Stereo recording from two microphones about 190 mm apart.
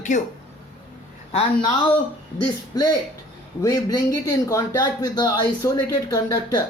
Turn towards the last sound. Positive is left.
turn(degrees=15)  # may be behind; listen again after turning